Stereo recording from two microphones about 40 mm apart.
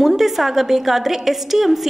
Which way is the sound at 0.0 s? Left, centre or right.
Centre.